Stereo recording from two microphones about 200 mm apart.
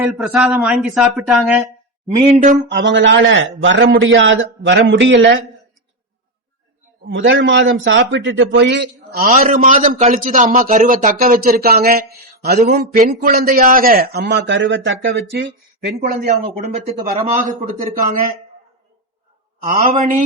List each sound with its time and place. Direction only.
0.0 s a man's voice: centre (ahead or behind)
2.4 s a man's voice: 40° right (ahead or behind)
2.8 s a man's voice: 70° right (ahead or behind)
7.1 s a man's voice: 65° right (ahead or behind)
9.4 s a man's voice: 45° right (ahead or behind)
19.6 s a man's voice: 45° right (ahead or behind)